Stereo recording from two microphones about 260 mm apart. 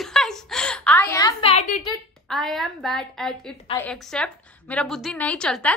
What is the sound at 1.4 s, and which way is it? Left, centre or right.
Speech, left.